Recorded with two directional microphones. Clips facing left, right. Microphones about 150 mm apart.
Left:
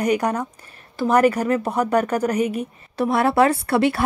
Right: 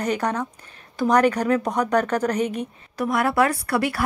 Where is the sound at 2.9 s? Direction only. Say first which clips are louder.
Left 3 dB; 30° left (ahead or behind).